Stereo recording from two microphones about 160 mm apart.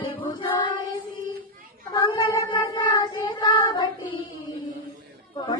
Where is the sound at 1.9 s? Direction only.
30° left (ahead or behind).